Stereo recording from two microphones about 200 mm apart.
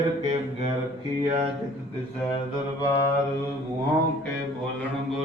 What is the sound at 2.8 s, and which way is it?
Mantra, 20° left (ahead or behind).